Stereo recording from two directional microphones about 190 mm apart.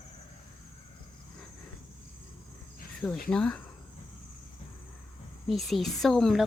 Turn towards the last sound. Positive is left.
turn(degrees=0)  # may be behind; listen again after turning